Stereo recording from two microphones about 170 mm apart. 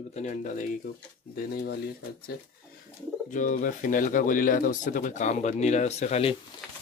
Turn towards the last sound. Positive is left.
turn(degrees=40)  # may be behind; listen again after turning